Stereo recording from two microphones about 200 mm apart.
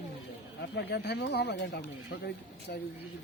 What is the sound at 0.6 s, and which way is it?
Speech, 60° left (ahead or behind).